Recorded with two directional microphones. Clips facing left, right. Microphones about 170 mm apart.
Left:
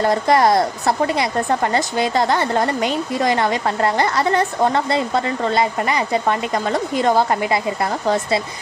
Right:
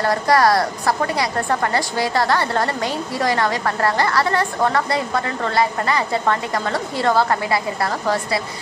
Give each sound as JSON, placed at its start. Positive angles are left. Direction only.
{"t": 0.0, "sound": "a woman's voice", "side_deg": 20}